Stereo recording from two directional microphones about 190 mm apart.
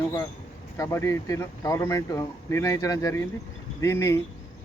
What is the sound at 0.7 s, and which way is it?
Speech, 15° left (ahead or behind).